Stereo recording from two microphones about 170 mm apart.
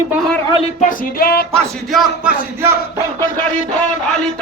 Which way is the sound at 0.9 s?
60° left (ahead or behind).